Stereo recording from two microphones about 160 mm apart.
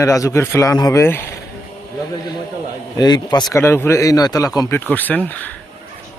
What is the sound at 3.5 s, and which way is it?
Speech, 15° left (ahead or behind).